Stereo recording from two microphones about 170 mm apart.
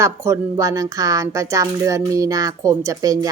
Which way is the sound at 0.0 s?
20° right (ahead or behind).